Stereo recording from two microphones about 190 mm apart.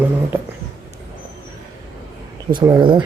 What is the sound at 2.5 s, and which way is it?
Speech, 20° right (ahead or behind).